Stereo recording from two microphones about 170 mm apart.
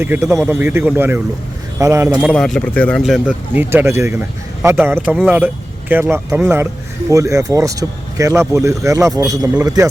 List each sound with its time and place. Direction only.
0.0 s a man's voice: 10° right (ahead or behind)
2.3 s a man's voice: 5° left (ahead or behind)
3.5 s a man's voice: 10° right (ahead or behind)